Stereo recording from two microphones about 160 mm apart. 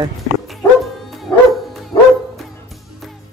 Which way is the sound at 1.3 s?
25° left (ahead or behind).